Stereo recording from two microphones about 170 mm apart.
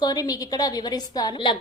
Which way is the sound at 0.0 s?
20° left (ahead or behind).